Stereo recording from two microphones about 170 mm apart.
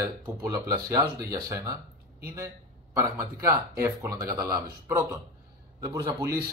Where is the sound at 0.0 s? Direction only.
20° right (ahead or behind).